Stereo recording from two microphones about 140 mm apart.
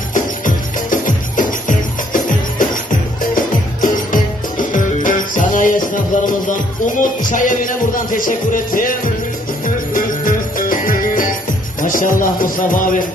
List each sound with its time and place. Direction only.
0.1 s music: 70° left (ahead or behind)
9.9 s music: 75° left (ahead or behind)